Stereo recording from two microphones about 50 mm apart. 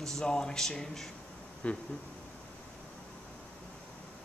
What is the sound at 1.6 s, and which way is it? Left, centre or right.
Speech, left.